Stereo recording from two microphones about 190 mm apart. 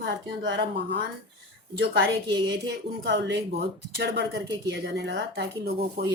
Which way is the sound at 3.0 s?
65° right (ahead or behind).